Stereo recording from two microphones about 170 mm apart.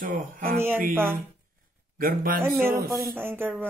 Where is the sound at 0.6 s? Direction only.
15° right (ahead or behind).